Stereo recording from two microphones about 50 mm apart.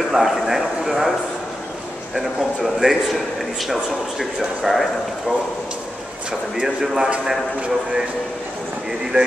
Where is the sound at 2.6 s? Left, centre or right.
Centre.